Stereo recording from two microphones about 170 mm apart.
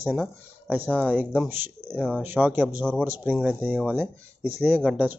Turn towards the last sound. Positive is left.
turn(degrees=-10)  # may be behind; listen again after turning